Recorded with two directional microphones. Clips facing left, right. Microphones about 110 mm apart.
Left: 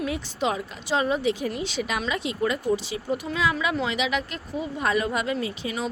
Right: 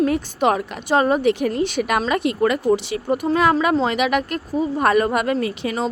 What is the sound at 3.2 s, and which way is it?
Speech, 50° right (ahead or behind).